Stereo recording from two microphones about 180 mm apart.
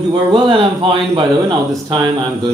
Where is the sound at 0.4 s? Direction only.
25° right (ahead or behind).